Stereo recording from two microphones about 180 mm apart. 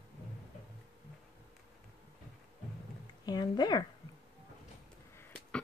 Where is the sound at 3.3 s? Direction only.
25° left (ahead or behind).